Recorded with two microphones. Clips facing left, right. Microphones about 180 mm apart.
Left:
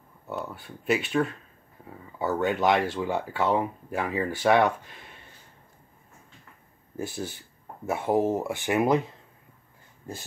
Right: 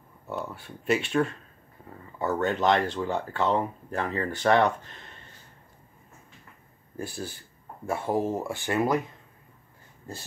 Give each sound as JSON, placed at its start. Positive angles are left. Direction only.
{"t": 0.3, "sound": "speech", "side_deg": 0}
{"t": 7.0, "sound": "speech", "side_deg": 20}